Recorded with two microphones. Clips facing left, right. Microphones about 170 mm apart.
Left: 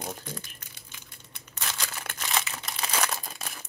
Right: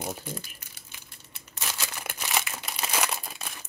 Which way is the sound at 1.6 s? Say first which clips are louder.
Even; 10° right (ahead or behind).